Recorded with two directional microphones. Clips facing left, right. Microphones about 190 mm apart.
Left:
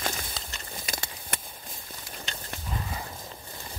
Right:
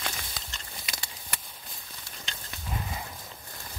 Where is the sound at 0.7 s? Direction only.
45° left (ahead or behind).